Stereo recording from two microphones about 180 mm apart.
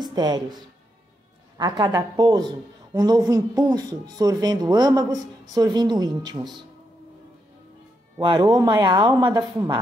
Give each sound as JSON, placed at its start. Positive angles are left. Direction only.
{"t": 0.0, "sound": "a woman's voice", "side_deg": -25}
{"t": 1.6, "sound": "a woman's voice", "side_deg": -20}
{"t": 8.2, "sound": "a woman's voice", "side_deg": -20}